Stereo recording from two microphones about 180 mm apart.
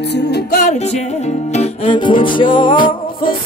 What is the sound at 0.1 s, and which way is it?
Music, 65° left (ahead or behind).